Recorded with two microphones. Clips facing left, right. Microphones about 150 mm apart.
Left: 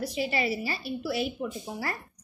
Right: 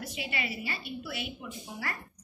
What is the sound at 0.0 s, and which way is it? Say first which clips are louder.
A woman's voice: left 8 dB; 35° left (ahead or behind).